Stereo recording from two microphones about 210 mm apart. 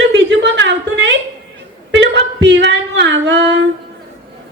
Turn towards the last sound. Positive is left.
turn(degrees=-55)  # may be behind; listen again after turning